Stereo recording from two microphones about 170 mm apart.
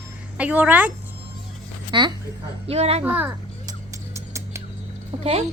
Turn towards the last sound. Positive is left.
turn(degrees=-25)  # may be behind; listen again after turning